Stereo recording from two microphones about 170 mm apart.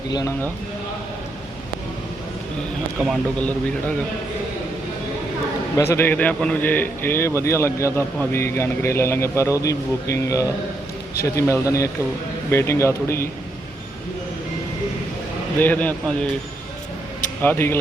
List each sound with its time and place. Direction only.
0.1 s a man's voice: 25° left (ahead or behind)
3.3 s a man's voice: 10° left (ahead or behind)
5.7 s a man's voice: 15° left (ahead or behind)
15.5 s a man's voice: 10° left (ahead or behind)
17.4 s a man's voice: 10° left (ahead or behind)